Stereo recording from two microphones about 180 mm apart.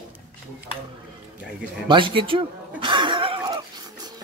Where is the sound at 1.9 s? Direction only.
30° right (ahead or behind).